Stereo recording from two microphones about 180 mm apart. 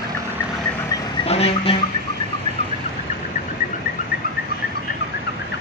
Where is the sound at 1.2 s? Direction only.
35° left (ahead or behind).